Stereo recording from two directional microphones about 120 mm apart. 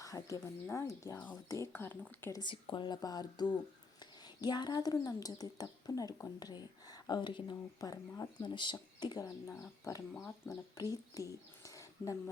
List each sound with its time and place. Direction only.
0.0 s speech: 25° left (ahead or behind)
2.3 s speech: 40° left (ahead or behind)